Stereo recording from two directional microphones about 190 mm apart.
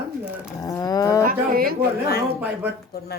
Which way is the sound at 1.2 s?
50° right (ahead or behind).